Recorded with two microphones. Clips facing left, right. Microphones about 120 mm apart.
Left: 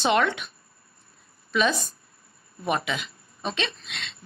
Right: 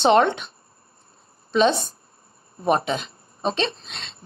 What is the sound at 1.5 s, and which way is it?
Speech, 30° right (ahead or behind).